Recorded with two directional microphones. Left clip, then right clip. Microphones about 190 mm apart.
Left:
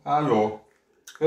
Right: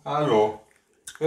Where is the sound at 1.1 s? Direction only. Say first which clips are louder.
Right 2 dB; 5° right (ahead or behind).